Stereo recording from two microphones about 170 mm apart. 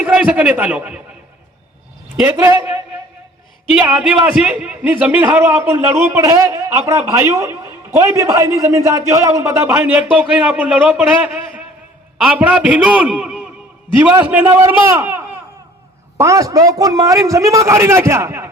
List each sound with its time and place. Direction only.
0.0 s a man's voice: 10° right (ahead or behind)
2.3 s a man's voice: 15° right (ahead or behind)